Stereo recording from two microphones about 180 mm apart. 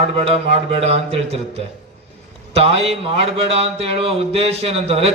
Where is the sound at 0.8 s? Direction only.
35° right (ahead or behind).